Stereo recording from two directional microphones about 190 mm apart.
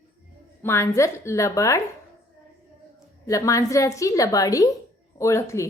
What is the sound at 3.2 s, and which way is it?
A woman's voice, 15° left (ahead or behind).